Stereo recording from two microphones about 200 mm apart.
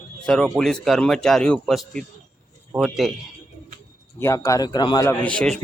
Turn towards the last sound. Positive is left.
turn(degrees=5)  # may be behind; listen again after turning